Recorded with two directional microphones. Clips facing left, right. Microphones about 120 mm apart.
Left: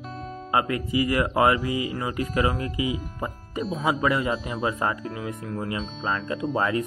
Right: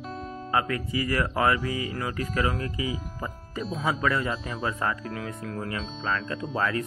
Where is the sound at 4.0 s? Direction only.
15° left (ahead or behind).